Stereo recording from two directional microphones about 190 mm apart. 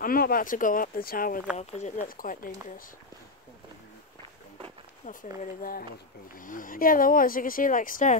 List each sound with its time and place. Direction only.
0.0 s speech: 50° left (ahead or behind)
1.6 s speech: 35° left (ahead or behind)
5.0 s speech: 45° left (ahead or behind)